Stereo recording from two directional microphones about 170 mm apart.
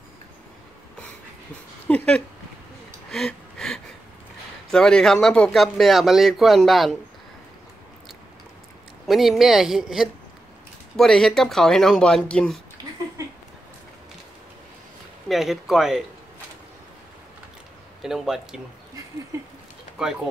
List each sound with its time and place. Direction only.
1.9 s speech: 5° left (ahead or behind)
3.1 s gasp: centre (ahead or behind)
4.6 s speech: 5° left (ahead or behind)
9.0 s speech: centre (ahead or behind)
15.2 s speech: centre (ahead or behind)
18.0 s speech: 5° right (ahead or behind)
20.0 s speech: 5° right (ahead or behind)